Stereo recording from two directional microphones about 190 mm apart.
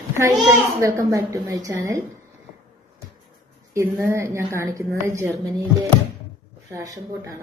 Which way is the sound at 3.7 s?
15° right (ahead or behind).